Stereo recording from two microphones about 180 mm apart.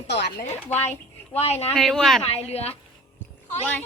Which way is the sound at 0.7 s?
10° left (ahead or behind).